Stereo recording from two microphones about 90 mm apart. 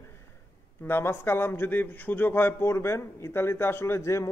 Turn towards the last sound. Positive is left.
turn(degrees=30)  # may be behind; listen again after turning